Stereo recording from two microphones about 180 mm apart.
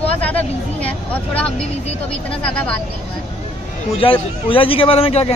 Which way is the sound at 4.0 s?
30° left (ahead or behind).